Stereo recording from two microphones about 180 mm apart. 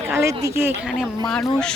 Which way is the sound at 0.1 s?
15° right (ahead or behind).